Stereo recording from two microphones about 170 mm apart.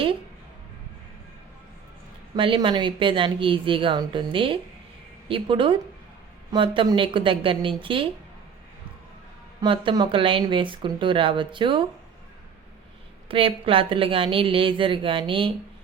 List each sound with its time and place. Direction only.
2.3 s a woman's voice: 30° right (ahead or behind)
9.6 s speech: 25° right (ahead or behind)
13.2 s a woman's voice: 30° right (ahead or behind)